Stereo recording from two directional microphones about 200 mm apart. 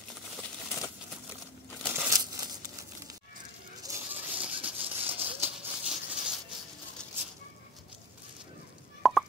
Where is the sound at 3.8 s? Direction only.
10° right (ahead or behind).